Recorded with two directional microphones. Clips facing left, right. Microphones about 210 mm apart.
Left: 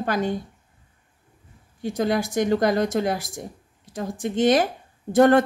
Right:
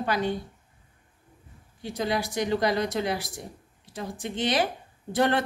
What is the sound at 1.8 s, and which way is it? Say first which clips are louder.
Speech: left 5 dB; 50° left (ahead or behind).